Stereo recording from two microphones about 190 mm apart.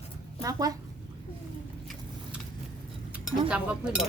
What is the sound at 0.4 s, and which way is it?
Speech, 20° right (ahead or behind).